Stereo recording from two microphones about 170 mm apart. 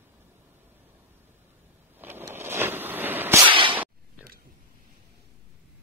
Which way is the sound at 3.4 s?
30° right (ahead or behind).